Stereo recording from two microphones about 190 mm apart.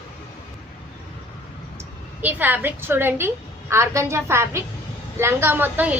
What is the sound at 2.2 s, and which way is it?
A woman's voice, 10° right (ahead or behind).